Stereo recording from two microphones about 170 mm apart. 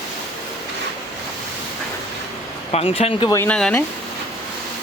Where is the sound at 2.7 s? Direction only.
35° left (ahead or behind).